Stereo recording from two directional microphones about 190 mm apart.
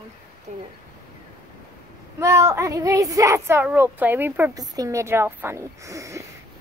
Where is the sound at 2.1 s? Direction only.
15° right (ahead or behind).